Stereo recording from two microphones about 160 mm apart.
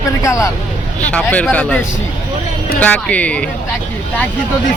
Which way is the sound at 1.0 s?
10° left (ahead or behind).